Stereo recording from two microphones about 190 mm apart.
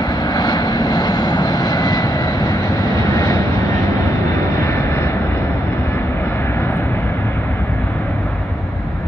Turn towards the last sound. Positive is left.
turn(degrees=10)  # may be behind; listen again after turning